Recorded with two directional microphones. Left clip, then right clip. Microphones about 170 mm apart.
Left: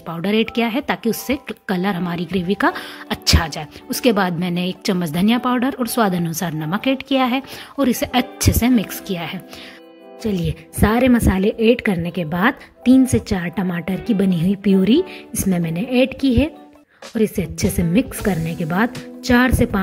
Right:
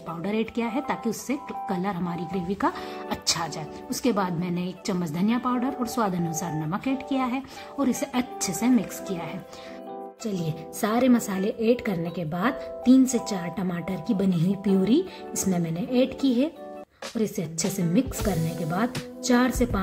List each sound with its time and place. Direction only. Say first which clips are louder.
0.1 s a woman's voice: left 9 dB; 30° left (ahead or behind)
18.3 s speech: left 5 dB; centre (ahead or behind)
19.2 s a woman's voice: left 7 dB; 30° left (ahead or behind)